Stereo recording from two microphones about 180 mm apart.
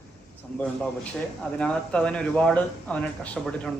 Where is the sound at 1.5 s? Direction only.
5° left (ahead or behind).